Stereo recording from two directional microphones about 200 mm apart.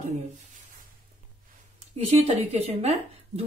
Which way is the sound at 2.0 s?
30° right (ahead or behind).